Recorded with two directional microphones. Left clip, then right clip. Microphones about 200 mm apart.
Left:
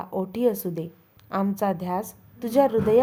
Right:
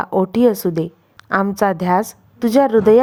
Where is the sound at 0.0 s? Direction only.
30° right (ahead or behind).